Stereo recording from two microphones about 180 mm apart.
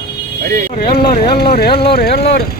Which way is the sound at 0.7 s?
55° left (ahead or behind).